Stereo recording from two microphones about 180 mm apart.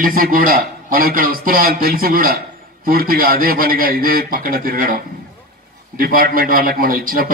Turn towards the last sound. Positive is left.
turn(degrees=-50)  # may be behind; listen again after turning